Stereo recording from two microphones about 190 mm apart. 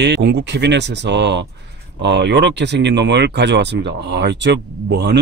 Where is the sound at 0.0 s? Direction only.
60° right (ahead or behind).